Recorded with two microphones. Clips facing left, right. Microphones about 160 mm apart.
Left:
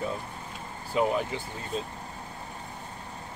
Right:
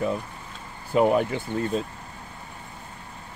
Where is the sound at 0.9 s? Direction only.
60° right (ahead or behind).